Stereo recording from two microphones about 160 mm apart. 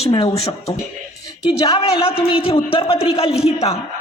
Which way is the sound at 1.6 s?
40° left (ahead or behind).